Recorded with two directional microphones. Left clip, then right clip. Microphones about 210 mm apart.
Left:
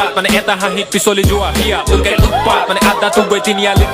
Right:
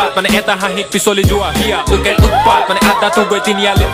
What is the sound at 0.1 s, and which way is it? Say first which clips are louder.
Music: even; centre (ahead or behind).